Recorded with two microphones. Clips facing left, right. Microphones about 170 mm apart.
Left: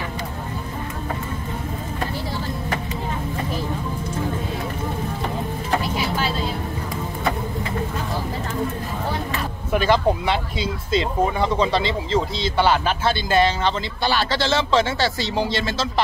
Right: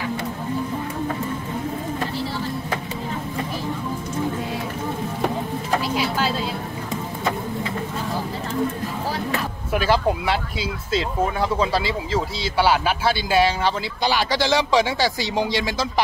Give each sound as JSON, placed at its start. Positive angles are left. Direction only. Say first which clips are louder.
{"t": 9.7, "sound": "speech", "louder": "left 2 dB", "side_deg": -5}